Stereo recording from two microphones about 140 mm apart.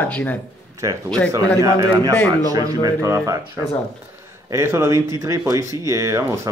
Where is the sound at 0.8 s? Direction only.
25° right (ahead or behind).